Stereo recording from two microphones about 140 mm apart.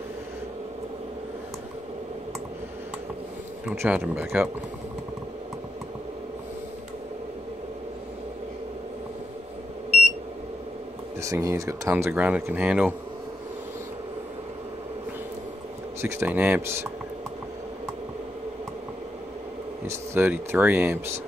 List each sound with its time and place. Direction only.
3.7 s speech: 15° right (ahead or behind)
11.1 s speech: 20° right (ahead or behind)
11.9 s speech: 10° right (ahead or behind)
16.0 s speech: 15° right (ahead or behind)
19.9 s speech: 15° right (ahead or behind)